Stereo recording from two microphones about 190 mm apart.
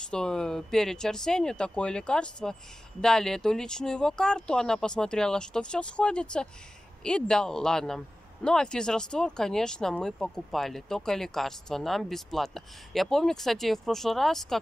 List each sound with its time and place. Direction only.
0.0 s speech: 5° left (ahead or behind)